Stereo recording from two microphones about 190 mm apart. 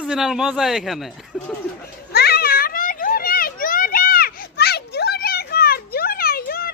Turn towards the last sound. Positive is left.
turn(degrees=55)  # may be behind; listen again after turning